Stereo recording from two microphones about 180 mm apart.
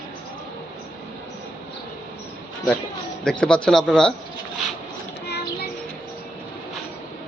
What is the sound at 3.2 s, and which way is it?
Speech, 5° left (ahead or behind).